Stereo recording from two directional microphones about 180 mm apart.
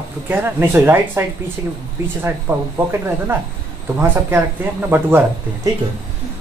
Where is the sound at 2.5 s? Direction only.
10° right (ahead or behind).